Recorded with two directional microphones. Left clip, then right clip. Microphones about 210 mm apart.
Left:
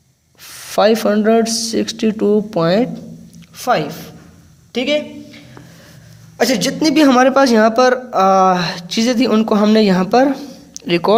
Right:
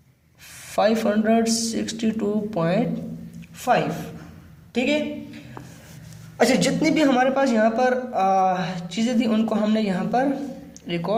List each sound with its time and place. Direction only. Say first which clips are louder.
0.4 s speech: left 8 dB; 40° left (ahead or behind)
4.7 s speech: left 5 dB; 45° left (ahead or behind)
6.3 s a man's voice: left 3 dB; 30° left (ahead or behind); by 11.1 s 50° left (ahead or behind)